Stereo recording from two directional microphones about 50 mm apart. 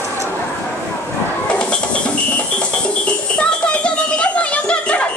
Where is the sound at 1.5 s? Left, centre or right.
Left.